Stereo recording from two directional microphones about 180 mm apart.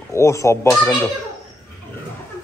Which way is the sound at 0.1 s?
15° left (ahead or behind).